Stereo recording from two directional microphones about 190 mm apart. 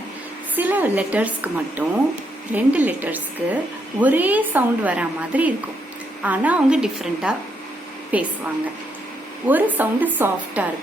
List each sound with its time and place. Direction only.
0.5 s a woman's voice: 10° right (ahead or behind)
9.5 s a woman's voice: 10° right (ahead or behind)